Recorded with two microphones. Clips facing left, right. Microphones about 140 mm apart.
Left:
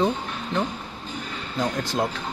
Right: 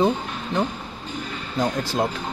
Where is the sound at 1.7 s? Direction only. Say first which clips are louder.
Right 2 dB; 5° right (ahead or behind).